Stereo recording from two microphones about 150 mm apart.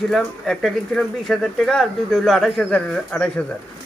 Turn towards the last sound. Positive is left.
turn(degrees=5)  # may be behind; listen again after turning